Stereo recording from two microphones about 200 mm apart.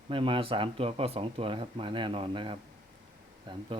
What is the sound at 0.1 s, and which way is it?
Speech, 25° right (ahead or behind).